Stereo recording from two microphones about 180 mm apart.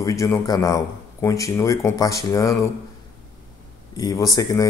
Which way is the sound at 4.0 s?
20° left (ahead or behind).